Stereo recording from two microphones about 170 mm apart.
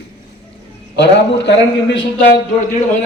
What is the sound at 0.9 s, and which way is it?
Speech, 90° left.